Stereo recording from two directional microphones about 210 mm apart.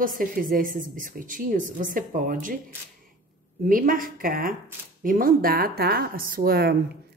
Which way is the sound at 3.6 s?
40° right (ahead or behind).